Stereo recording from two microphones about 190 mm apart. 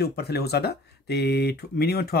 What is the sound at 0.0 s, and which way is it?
Speech, 55° left (ahead or behind).